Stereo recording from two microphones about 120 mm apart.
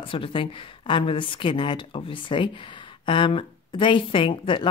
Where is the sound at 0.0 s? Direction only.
45° left (ahead or behind).